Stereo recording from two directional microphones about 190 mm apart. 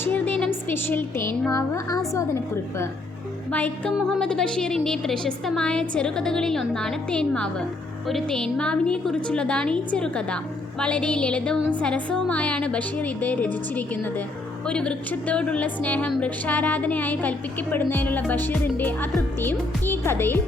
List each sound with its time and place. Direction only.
0.0 s a woman's voice: 10° left (ahead or behind)